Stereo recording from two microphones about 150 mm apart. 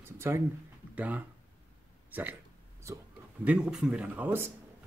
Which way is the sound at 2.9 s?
20° right (ahead or behind).